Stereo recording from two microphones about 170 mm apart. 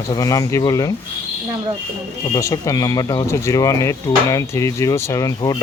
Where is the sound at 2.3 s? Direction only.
20° left (ahead or behind).